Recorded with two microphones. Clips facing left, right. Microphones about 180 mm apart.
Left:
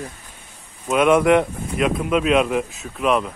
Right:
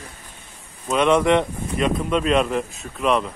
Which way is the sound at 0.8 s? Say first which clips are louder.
Left 2 dB; 5° left (ahead or behind).